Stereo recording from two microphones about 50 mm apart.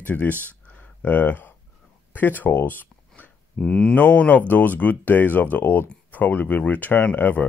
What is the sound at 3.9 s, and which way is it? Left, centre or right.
Speech, left.